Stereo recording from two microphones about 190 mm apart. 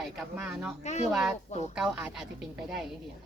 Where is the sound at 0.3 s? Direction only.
5° right (ahead or behind).